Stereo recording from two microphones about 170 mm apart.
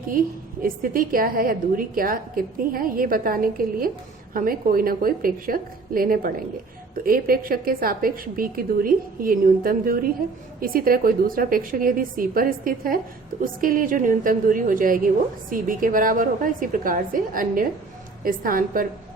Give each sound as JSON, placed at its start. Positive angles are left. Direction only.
{"t": 0.6, "sound": "a woman's voice", "side_deg": -55}